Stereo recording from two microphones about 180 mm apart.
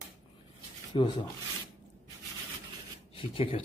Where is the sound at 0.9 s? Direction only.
30° left (ahead or behind).